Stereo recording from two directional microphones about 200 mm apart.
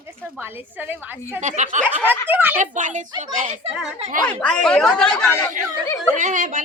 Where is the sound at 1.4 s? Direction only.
40° right (ahead or behind).